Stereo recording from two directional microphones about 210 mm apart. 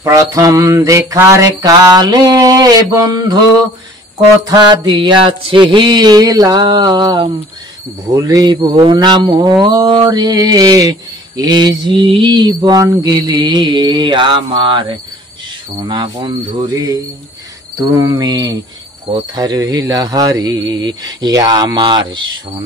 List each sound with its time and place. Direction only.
0.0 s mantra: 15° right (ahead or behind)
4.5 s mantra: 20° right (ahead or behind)